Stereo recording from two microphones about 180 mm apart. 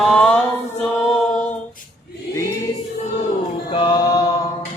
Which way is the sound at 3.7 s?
25° left (ahead or behind).